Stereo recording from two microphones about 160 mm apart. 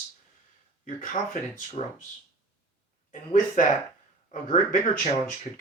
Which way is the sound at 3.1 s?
50° left (ahead or behind).